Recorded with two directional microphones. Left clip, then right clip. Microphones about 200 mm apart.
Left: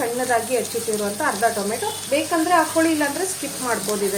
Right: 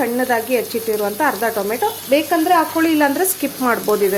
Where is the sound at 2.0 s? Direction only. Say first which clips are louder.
Right 4 dB; 55° right (ahead or behind).